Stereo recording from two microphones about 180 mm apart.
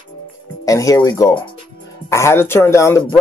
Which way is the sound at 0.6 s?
20° left (ahead or behind).